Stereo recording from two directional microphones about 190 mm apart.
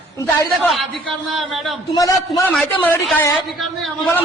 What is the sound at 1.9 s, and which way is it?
A man's voice, 15° left (ahead or behind).